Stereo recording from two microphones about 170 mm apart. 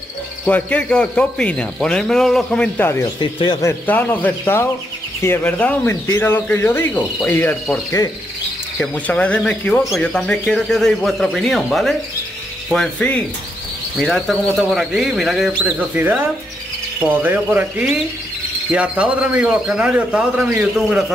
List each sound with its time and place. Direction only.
0.5 s speech: 10° left (ahead or behind)
3.2 s speech: 30° left (ahead or behind)
3.6 s speech: 10° left (ahead or behind)
8.7 s a man's voice: 5° left (ahead or behind)